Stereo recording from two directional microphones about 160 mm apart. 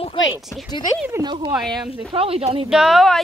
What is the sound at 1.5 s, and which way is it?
Speech, centre (ahead or behind).